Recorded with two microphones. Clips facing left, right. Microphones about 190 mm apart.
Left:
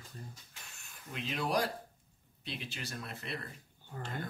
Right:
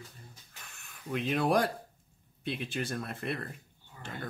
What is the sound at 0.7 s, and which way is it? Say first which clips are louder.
Speech: right 11 dB; 55° right (ahead or behind).